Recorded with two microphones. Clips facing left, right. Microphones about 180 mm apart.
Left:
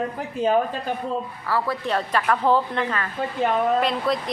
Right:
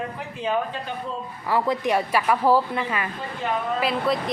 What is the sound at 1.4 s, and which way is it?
A woman's voice, 20° right (ahead or behind).